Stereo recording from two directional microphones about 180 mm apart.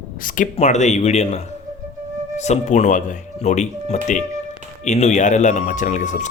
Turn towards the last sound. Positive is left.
turn(degrees=40)  # may be behind; listen again after turning